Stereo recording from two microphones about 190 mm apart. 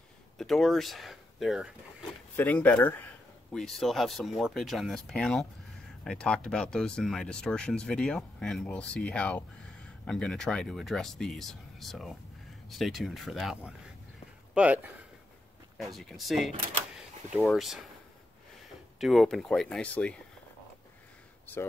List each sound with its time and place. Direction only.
0.4 s speech: centre (ahead or behind)
2.3 s speech: 10° left (ahead or behind)
18.9 s speech: centre (ahead or behind)